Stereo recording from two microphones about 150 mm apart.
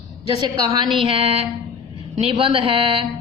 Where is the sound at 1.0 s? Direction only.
40° right (ahead or behind).